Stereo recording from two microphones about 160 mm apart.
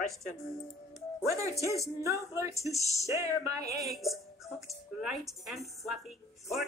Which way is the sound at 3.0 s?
20° right (ahead or behind).